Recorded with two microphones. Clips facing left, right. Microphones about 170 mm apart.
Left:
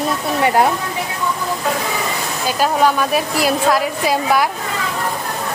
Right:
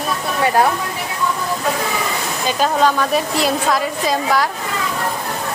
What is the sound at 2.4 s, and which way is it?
A woman's voice, 10° left (ahead or behind).